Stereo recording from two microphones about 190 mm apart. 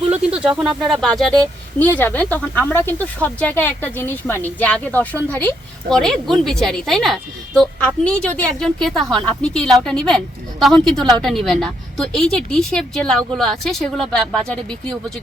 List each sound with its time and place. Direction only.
0.1 s a woman's voice: 5° right (ahead or behind)